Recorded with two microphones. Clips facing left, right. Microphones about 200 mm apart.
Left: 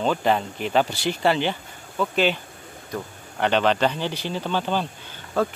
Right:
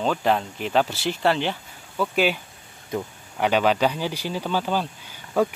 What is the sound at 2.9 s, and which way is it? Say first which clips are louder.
Speech: right 3 dB; 20° right (ahead or behind).